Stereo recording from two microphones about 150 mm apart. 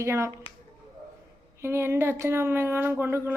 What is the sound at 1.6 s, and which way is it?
Speech, 15° right (ahead or behind).